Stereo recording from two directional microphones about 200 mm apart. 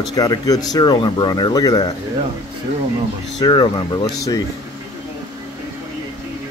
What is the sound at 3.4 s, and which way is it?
Speech, 20° left (ahead or behind).